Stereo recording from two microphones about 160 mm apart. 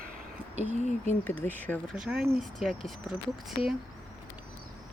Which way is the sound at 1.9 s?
5° right (ahead or behind).